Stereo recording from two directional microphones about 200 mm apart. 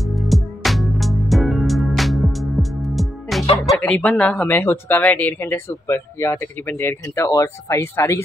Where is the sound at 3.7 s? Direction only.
5° left (ahead or behind).